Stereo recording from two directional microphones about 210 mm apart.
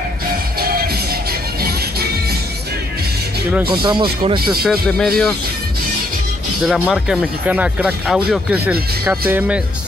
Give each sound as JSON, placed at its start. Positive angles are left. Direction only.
{"t": 0.6, "sound": "music", "side_deg": -45}
{"t": 3.8, "sound": "speech", "side_deg": -25}
{"t": 4.6, "sound": "speech", "side_deg": 0}
{"t": 6.6, "sound": "speech", "side_deg": 0}